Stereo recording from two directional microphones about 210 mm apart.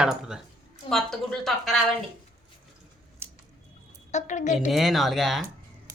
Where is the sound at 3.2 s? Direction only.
10° right (ahead or behind).